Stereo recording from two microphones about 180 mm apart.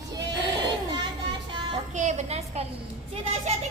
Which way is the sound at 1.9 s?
40° right (ahead or behind).